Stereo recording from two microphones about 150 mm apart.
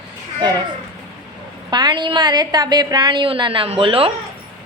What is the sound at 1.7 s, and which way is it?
A woman's voice, 30° right (ahead or behind).